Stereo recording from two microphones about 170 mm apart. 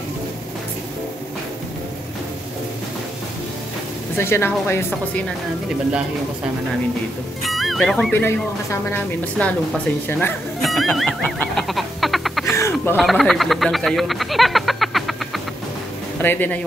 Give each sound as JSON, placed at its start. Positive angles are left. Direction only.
{"t": 4.2, "sound": "speech", "side_deg": 15}
{"t": 7.4, "sound": "music", "side_deg": 0}
{"t": 8.9, "sound": "speech", "side_deg": 10}
{"t": 10.6, "sound": "music", "side_deg": 0}
{"t": 12.5, "sound": "a sound", "side_deg": 15}
{"t": 12.9, "sound": "speech", "side_deg": 0}
{"t": 16.2, "sound": "speech", "side_deg": 10}